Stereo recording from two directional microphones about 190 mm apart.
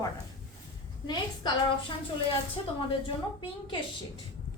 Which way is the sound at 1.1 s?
25° left (ahead or behind).